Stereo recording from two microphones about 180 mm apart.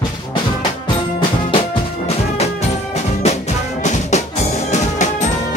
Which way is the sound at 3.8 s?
40° left (ahead or behind).